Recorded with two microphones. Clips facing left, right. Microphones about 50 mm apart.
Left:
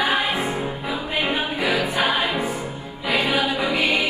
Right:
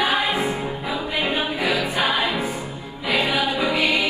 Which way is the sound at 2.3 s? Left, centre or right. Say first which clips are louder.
Left 1 dB; left.